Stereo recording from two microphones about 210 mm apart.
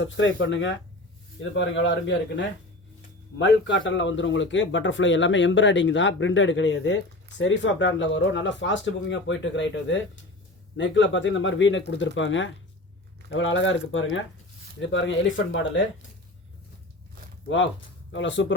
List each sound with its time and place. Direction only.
0.0 s a man's voice: 65° left (ahead or behind)
18.1 s a man's voice: 60° left (ahead or behind)